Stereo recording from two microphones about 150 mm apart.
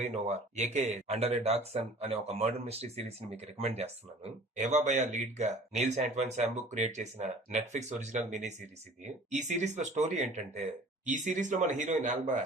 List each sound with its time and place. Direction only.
0.0 s speech: 50° right (ahead or behind)